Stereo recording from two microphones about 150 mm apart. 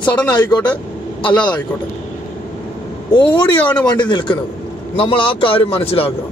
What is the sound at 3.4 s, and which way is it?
Speech, 10° left (ahead or behind).